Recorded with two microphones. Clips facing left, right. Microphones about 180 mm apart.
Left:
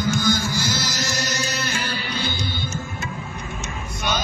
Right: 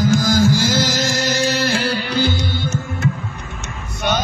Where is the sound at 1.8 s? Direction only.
80° right.